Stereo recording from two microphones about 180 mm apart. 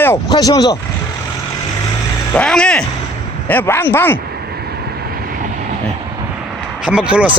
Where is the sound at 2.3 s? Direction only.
5° left (ahead or behind).